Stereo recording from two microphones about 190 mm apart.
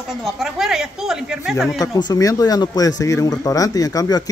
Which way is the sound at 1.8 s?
20° left (ahead or behind).